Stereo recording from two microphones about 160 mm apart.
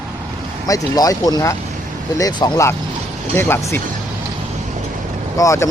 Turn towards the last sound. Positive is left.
turn(degrees=20)  # may be behind; listen again after turning